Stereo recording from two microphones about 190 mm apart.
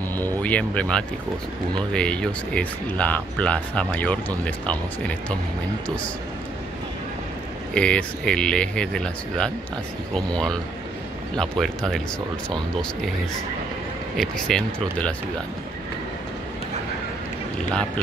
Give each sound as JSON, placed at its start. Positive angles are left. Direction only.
{"t": 0.2, "sound": "speech", "side_deg": 10}
{"t": 7.7, "sound": "speech", "side_deg": 5}
{"t": 14.1, "sound": "speech", "side_deg": 0}